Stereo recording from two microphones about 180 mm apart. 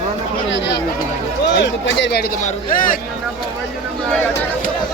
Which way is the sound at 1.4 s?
75° left (ahead or behind).